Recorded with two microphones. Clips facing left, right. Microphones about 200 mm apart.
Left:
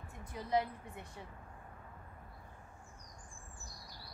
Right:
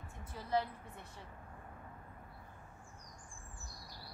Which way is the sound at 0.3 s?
15° left (ahead or behind).